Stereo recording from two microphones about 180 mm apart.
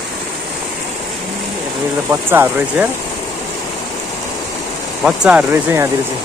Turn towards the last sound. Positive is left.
turn(degrees=-10)  # may be behind; listen again after turning